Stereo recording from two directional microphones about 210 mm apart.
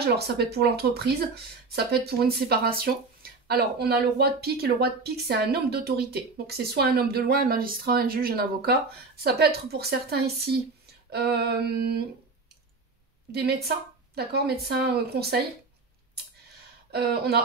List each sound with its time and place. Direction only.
0.0 s speech: 50° right (ahead or behind)
13.3 s speech: 50° right (ahead or behind)
16.9 s speech: 50° right (ahead or behind)